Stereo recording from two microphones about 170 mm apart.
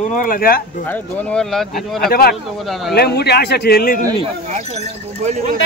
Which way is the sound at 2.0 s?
60° left (ahead or behind).